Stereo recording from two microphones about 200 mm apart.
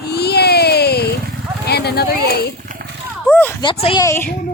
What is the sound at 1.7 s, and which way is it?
Clip-clop, 55° left (ahead or behind).